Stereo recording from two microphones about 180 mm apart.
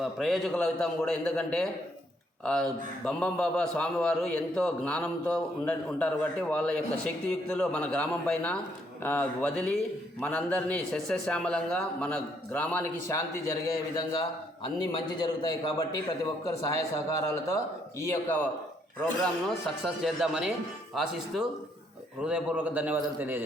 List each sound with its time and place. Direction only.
0.0 s a man's voice: centre (ahead or behind); by 16.8 s 20° left (ahead or behind)
18.0 s a man's voice: 10° left (ahead or behind)
19.2 s a man's voice: centre (ahead or behind)